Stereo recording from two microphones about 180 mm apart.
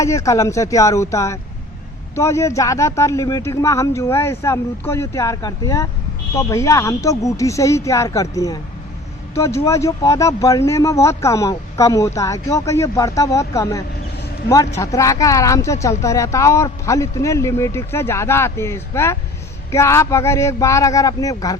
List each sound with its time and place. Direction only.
0.0 s speech: 15° left (ahead or behind)